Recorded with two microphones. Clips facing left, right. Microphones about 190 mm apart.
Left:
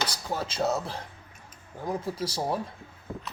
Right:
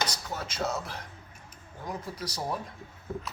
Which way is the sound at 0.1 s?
30° left (ahead or behind).